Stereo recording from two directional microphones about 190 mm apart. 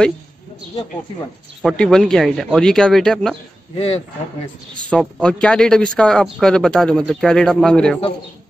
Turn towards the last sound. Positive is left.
turn(degrees=5)  # may be behind; listen again after turning